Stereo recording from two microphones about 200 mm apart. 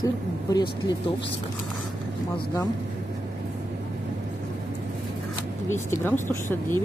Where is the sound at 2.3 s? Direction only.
15° left (ahead or behind).